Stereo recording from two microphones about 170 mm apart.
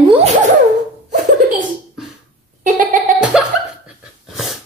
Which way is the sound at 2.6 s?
50° right (ahead or behind).